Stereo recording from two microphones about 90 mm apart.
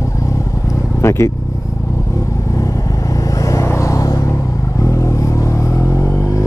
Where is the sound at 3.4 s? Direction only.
35° left (ahead or behind).